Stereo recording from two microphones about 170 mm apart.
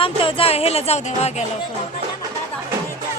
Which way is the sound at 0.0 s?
30° left (ahead or behind).